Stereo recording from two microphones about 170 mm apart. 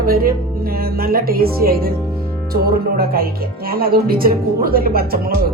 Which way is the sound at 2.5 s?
60° right (ahead or behind).